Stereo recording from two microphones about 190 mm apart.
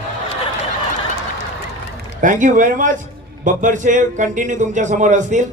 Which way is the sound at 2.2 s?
40° right (ahead or behind).